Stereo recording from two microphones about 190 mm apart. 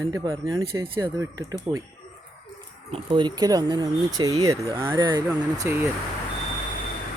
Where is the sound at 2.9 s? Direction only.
25° right (ahead or behind).